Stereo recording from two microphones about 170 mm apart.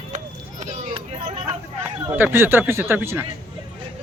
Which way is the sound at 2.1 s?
10° right (ahead or behind).